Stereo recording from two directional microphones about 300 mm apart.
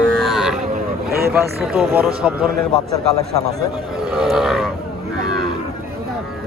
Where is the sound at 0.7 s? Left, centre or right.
Right.